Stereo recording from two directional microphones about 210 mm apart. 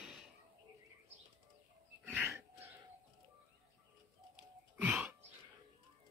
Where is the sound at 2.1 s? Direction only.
10° right (ahead or behind).